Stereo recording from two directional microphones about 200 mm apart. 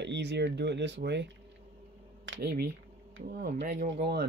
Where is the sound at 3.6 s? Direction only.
35° right (ahead or behind).